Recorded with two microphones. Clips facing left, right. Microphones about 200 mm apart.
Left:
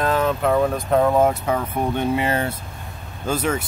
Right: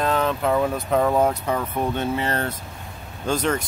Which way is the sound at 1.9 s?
15° left (ahead or behind).